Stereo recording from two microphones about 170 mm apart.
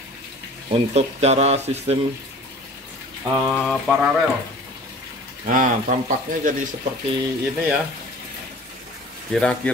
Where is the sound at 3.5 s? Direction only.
Centre (ahead or behind).